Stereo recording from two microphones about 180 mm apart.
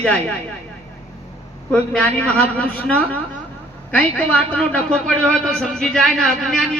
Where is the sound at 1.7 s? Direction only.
5° left (ahead or behind).